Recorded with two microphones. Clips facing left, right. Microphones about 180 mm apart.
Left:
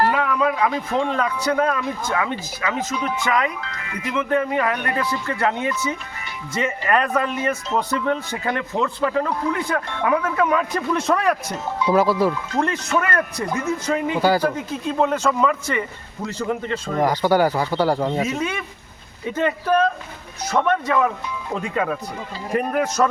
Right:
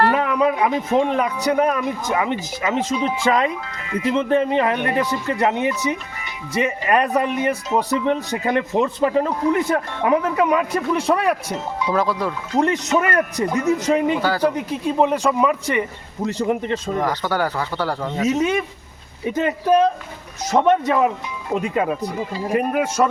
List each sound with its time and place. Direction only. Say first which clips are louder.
0.1 s speech: right 2 dB; 20° right (ahead or behind)
11.9 s speech: left 4 dB; 5° left (ahead or behind)
12.5 s speech: right 7 dB; 20° right (ahead or behind)
14.2 s speech: left 3 dB; 10° left (ahead or behind)
14.4 s speech: right 3 dB; 15° right (ahead or behind)
17.0 s speech: left 8 dB; 15° left (ahead or behind)
18.3 s speech: right 6 dB; 20° right (ahead or behind)